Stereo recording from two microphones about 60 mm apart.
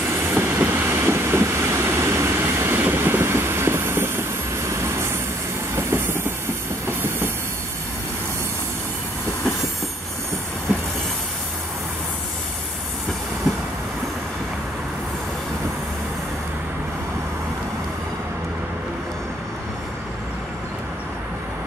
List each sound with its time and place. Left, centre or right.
0.3 s train: right